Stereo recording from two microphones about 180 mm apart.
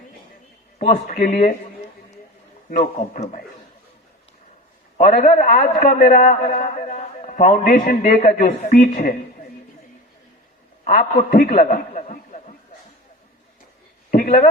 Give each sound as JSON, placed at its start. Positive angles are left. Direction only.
{"t": 1.0, "sound": "a man's voice", "side_deg": 45}
{"t": 2.6, "sound": "a man's voice", "side_deg": 45}
{"t": 4.9, "sound": "a man's voice", "side_deg": 45}
{"t": 10.8, "sound": "a man's voice", "side_deg": 40}
{"t": 11.3, "sound": "a man's voice", "side_deg": 55}
{"t": 14.1, "sound": "a sound", "side_deg": 50}